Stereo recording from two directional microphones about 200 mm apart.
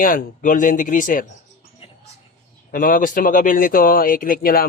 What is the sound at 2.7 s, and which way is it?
Speech, 45° left (ahead or behind).